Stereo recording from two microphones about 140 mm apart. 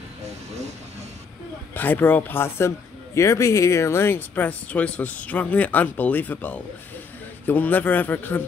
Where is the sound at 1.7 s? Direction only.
15° left (ahead or behind).